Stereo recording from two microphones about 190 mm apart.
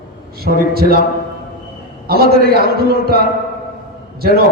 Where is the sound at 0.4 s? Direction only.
55° right (ahead or behind).